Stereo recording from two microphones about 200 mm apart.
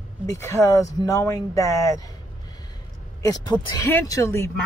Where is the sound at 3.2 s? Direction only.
20° left (ahead or behind).